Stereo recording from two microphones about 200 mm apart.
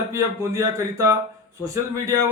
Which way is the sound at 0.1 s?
15° right (ahead or behind).